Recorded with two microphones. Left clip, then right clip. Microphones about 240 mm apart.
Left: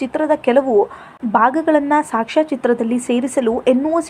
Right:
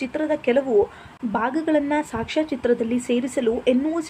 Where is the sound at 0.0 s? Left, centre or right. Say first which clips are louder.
Left 6 dB; centre.